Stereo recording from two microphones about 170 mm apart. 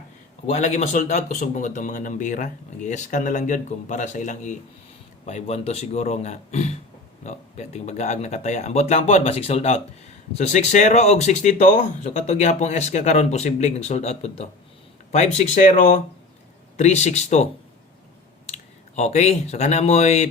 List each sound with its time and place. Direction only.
0.4 s a man's voice: 40° left (ahead or behind)